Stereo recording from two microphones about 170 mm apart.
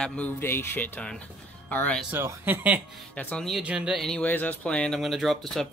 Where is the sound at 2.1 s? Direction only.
15° right (ahead or behind).